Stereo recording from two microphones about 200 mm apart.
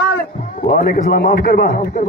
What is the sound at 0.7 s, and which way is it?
Speech, 45° left (ahead or behind).